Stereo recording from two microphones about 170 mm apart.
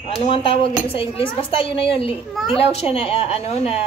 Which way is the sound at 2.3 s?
Centre (ahead or behind).